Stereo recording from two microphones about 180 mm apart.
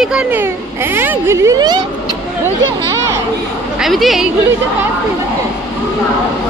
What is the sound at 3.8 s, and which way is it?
Speech, centre (ahead or behind).